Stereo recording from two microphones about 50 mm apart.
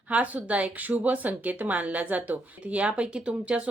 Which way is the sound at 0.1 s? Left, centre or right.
Right.